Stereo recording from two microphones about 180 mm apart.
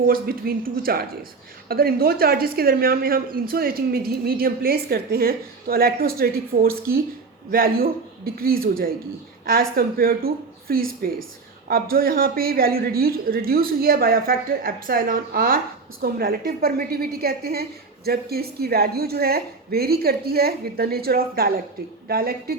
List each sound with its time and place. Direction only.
0.1 s a woman's voice: 55° right (ahead or behind)